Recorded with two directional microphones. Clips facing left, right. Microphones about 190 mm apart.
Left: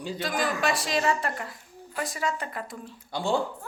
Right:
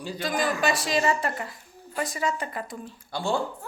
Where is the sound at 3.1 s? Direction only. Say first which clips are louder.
Left 1 dB; 15° left (ahead or behind).